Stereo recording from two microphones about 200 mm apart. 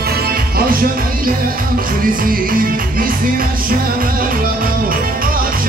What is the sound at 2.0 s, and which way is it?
Music, 45° right (ahead or behind).